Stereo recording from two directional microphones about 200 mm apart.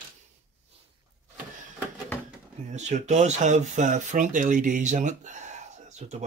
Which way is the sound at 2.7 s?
35° right (ahead or behind).